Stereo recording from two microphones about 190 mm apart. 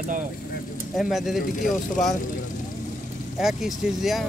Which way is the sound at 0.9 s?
Centre (ahead or behind).